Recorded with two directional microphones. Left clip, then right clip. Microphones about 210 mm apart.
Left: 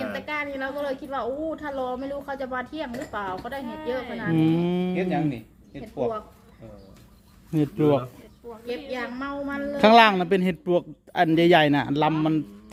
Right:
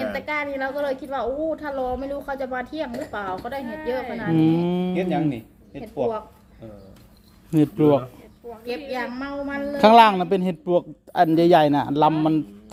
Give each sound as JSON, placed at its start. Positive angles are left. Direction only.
{"t": 0.1, "sound": "a woman's voice", "side_deg": -20}
{"t": 4.3, "sound": "a man's voice", "side_deg": 0}
{"t": 5.1, "sound": "speech", "side_deg": -30}
{"t": 7.5, "sound": "a man's voice", "side_deg": -5}
{"t": 8.6, "sound": "a woman's voice", "side_deg": -20}
{"t": 9.7, "sound": "a man's voice", "side_deg": 0}